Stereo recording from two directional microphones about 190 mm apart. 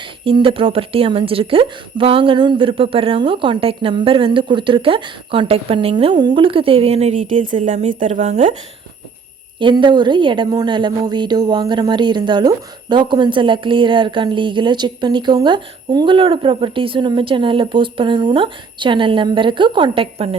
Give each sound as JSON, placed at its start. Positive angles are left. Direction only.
{"t": 0.0, "sound": "a woman's voice", "side_deg": -25}
{"t": 9.6, "sound": "a woman's voice", "side_deg": -25}